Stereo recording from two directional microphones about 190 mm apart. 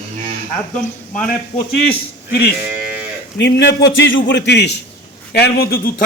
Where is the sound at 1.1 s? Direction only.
45° left (ahead or behind).